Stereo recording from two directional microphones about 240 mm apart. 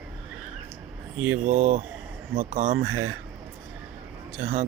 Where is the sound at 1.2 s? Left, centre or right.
Right.